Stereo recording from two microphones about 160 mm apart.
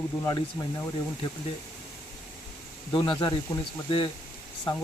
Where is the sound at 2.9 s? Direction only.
25° left (ahead or behind).